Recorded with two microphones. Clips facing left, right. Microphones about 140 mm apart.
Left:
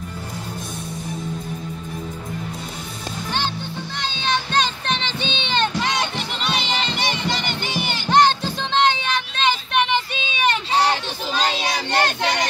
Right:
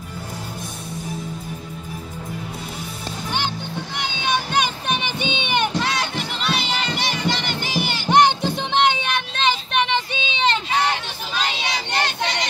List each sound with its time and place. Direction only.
3.3 s music: 15° right (ahead or behind)
8.1 s child singing: 15° right (ahead or behind)
10.7 s a sound: 35° left (ahead or behind)